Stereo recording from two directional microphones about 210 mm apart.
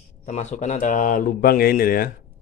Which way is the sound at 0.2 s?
35° left (ahead or behind).